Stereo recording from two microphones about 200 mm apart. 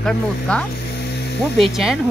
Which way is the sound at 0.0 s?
5° left (ahead or behind).